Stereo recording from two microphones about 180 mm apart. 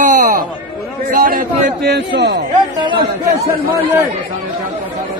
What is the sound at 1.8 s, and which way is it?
Speech, 65° right (ahead or behind).